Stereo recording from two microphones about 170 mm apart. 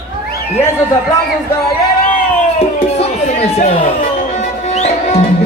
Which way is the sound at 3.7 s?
45° left (ahead or behind).